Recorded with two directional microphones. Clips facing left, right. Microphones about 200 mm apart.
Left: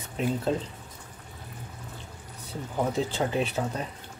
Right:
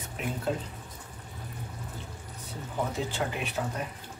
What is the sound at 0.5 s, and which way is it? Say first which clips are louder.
Speech: left 1 dB; 30° left (ahead or behind).